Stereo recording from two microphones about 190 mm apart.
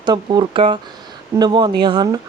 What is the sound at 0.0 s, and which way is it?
Speech, 25° right (ahead or behind).